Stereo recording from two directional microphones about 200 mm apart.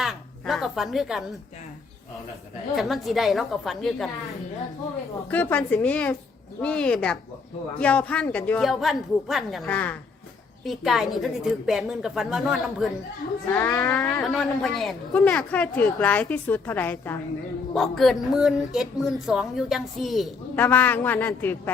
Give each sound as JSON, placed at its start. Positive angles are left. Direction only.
{"t": 0.0, "sound": "a woman's voice", "side_deg": 0}
{"t": 2.7, "sound": "a woman's voice", "side_deg": 0}
{"t": 13.5, "sound": "a woman's voice", "side_deg": 15}
{"t": 13.9, "sound": "a woman's voice", "side_deg": 5}